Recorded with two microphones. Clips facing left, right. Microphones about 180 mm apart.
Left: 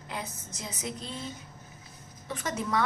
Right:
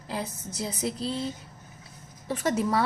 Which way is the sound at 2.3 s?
35° right (ahead or behind).